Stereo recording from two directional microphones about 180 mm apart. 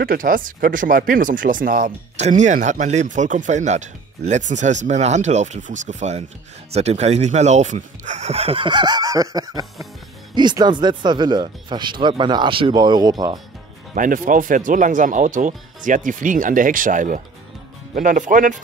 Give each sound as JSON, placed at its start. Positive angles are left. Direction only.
{"t": 0.0, "sound": "speech", "side_deg": -50}
{"t": 1.9, "sound": "speech", "side_deg": -40}
{"t": 13.9, "sound": "speech", "side_deg": -50}